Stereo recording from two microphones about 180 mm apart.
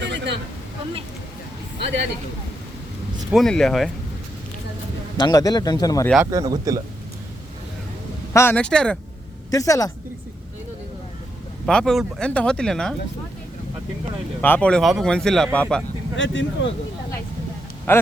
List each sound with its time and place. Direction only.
0.0 s a sound: 75° right (ahead or behind)
3.3 s speech: centre (ahead or behind)
5.1 s speech: 20° left (ahead or behind)
6.3 s a man's voice: 20° right (ahead or behind)
8.3 s speech: 15° left (ahead or behind)
9.5 s speech: 20° left (ahead or behind)
11.6 s speech: 5° left (ahead or behind)
14.4 s speech: 10° left (ahead or behind)
16.1 s speech: 90° left
17.9 s speech: 10° left (ahead or behind)